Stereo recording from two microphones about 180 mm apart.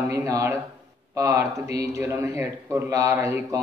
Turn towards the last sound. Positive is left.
turn(degrees=-15)  # may be behind; listen again after turning